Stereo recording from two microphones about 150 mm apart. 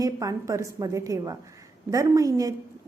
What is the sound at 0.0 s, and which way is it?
A woman's voice, 25° right (ahead or behind).